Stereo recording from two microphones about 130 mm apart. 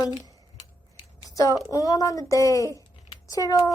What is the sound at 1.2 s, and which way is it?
Speech, 25° left (ahead or behind).